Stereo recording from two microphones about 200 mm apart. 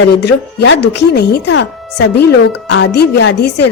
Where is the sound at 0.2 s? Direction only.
65° left (ahead or behind).